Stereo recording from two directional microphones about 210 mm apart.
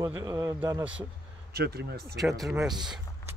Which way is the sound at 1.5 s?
50° right (ahead or behind).